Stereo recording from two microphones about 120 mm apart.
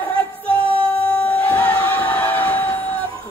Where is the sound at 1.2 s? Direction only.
10° left (ahead or behind).